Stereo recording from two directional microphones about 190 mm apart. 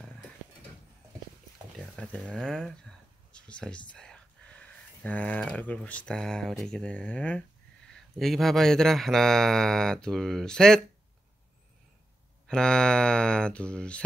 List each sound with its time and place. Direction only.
2.0 s mantra: 5° left (ahead or behind)
3.3 s speech: 5° left (ahead or behind)
7.9 s mantra: centre (ahead or behind)
12.4 s mantra: 5° left (ahead or behind)